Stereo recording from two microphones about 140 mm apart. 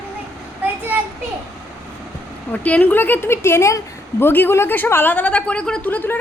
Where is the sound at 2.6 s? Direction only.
10° left (ahead or behind).